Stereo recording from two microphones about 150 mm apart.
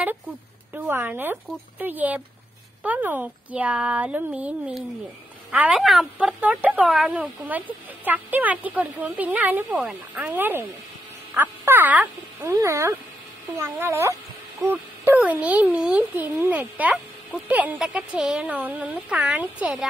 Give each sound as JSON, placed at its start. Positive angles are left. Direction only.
{"t": 0.7, "sound": "speech", "side_deg": -15}